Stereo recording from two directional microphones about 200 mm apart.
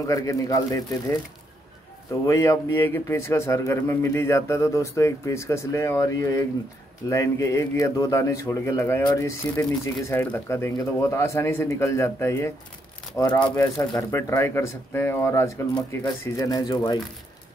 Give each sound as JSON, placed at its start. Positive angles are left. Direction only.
{"t": 0.0, "sound": "a man's voice", "side_deg": 15}
{"t": 2.2, "sound": "a man's voice", "side_deg": 15}